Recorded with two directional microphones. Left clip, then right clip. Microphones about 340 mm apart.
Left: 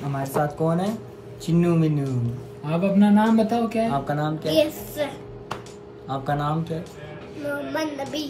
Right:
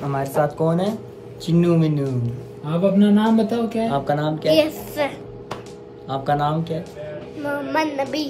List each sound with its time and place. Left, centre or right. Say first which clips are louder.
0.1 s speech: right 4 dB; centre
6.0 s speech: right 5 dB; centre